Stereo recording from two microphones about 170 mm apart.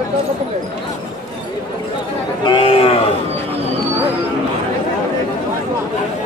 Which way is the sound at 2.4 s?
30° left (ahead or behind).